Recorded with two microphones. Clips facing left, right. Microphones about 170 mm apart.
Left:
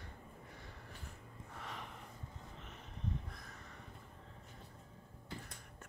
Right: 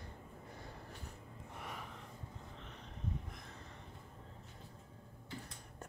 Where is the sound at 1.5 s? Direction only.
10° right (ahead or behind).